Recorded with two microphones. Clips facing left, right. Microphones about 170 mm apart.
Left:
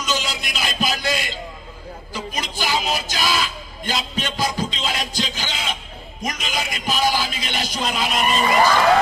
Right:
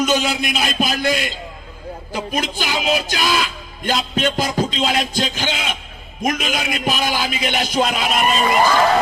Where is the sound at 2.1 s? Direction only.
55° right (ahead or behind).